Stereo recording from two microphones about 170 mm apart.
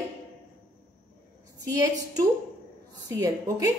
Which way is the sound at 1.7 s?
20° right (ahead or behind).